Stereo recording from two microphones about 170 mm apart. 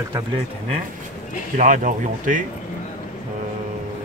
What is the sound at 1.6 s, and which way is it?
Speech, 50° right (ahead or behind).